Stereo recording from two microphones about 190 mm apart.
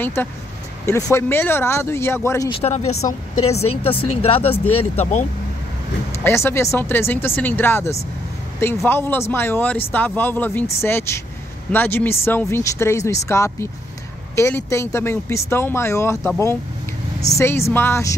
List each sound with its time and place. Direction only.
0.0 s speech: 10° left (ahead or behind)
2.5 s speech: 35° left (ahead or behind)
6.2 s speech: 15° left (ahead or behind)